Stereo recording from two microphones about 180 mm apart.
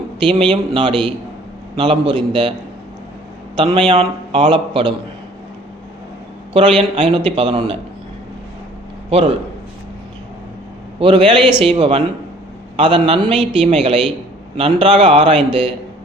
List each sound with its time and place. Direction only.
0.3 s a man's voice: 30° right (ahead or behind)
3.5 s a man's voice: 30° right (ahead or behind)
6.5 s speech: 30° right (ahead or behind)
9.0 s a man's voice: 35° right (ahead or behind)
11.0 s a man's voice: 30° right (ahead or behind)